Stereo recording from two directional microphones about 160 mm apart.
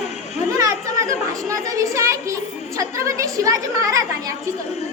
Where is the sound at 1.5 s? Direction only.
20° right (ahead or behind).